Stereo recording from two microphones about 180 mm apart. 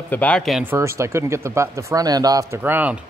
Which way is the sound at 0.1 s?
5° left (ahead or behind).